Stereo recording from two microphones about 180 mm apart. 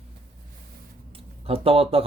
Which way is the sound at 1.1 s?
30° right (ahead or behind).